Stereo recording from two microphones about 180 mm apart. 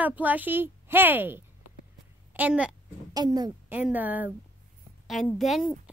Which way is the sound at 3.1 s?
20° right (ahead or behind).